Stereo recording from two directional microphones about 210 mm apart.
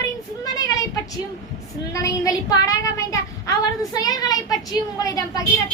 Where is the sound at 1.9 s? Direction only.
15° left (ahead or behind).